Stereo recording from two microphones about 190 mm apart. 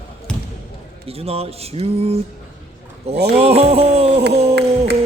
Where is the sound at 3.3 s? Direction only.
30° right (ahead or behind).